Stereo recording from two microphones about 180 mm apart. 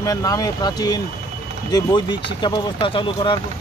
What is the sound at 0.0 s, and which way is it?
Speech, 20° left (ahead or behind).